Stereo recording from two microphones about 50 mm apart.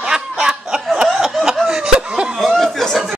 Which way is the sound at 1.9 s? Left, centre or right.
Centre.